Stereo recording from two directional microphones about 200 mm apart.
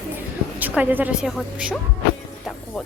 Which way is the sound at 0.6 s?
10° right (ahead or behind).